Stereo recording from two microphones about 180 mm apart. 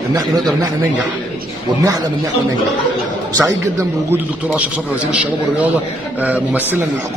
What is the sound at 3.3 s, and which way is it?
A man's voice, 15° right (ahead or behind).